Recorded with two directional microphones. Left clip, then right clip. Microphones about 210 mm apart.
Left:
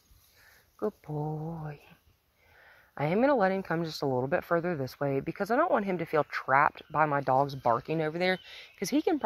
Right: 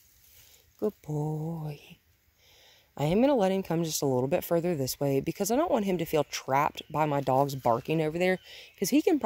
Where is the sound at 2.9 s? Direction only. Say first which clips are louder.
Right 1 dB; 30° right (ahead or behind).